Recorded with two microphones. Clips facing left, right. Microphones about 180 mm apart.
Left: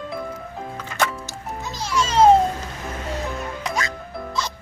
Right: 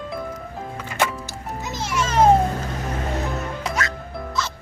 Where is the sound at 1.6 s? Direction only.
20° right (ahead or behind).